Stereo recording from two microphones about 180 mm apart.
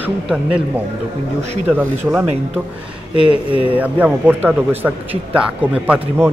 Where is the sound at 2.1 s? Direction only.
10° right (ahead or behind).